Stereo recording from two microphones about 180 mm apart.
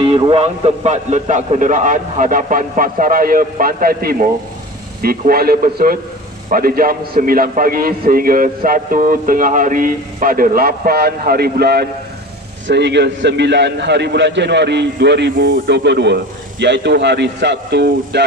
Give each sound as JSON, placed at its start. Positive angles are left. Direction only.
{"t": 0.0, "sound": "a man's voice", "side_deg": -30}